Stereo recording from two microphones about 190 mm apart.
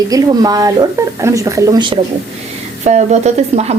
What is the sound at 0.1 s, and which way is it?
Speech, 20° right (ahead or behind).